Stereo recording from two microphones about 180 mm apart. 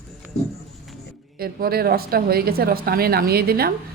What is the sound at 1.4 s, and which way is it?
Speech, 55° right (ahead or behind).